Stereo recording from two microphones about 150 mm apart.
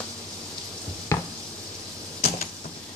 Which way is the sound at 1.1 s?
20° left (ahead or behind).